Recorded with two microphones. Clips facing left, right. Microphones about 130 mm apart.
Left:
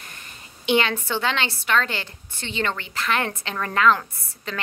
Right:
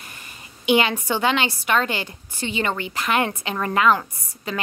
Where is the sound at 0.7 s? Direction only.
10° right (ahead or behind).